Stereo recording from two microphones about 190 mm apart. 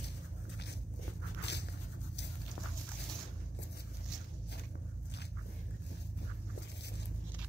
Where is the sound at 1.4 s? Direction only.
65° left (ahead or behind).